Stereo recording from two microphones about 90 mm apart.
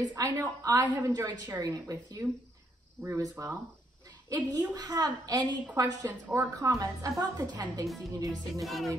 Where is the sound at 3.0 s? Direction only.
30° right (ahead or behind).